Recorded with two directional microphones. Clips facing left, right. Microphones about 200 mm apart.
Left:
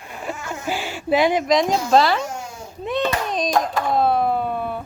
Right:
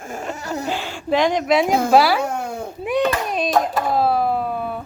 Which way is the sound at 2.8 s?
10° right (ahead or behind).